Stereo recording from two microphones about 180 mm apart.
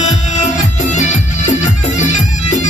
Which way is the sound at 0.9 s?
40° left (ahead or behind).